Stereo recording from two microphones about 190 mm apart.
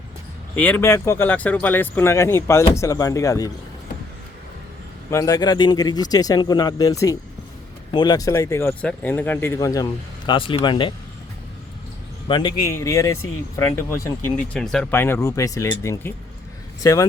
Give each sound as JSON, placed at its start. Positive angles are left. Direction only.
{"t": 0.5, "sound": "speech", "side_deg": 10}
{"t": 5.1, "sound": "speech", "side_deg": 20}
{"t": 12.3, "sound": "speech", "side_deg": 25}